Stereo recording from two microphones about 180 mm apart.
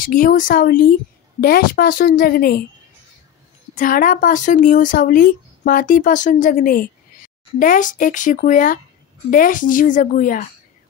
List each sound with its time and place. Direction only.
0.0 s a woman's voice: 50° left (ahead or behind)
3.7 s speech: 50° left (ahead or behind)